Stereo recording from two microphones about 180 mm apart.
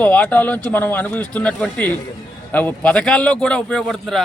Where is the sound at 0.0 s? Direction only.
10° left (ahead or behind).